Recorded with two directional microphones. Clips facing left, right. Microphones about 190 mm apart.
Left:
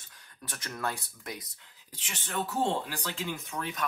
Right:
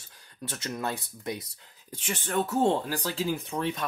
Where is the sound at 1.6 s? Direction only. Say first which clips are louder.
Right 12 dB; 45° right (ahead or behind).